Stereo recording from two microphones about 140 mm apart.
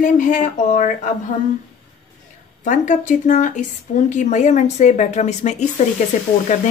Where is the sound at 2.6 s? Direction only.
65° left (ahead or behind).